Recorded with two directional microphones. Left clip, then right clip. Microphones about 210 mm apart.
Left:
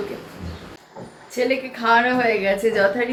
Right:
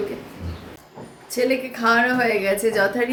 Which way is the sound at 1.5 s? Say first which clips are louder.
Left 1 dB; 10° right (ahead or behind).